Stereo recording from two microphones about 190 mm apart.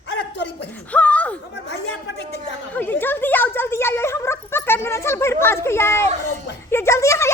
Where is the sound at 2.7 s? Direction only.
10° left (ahead or behind).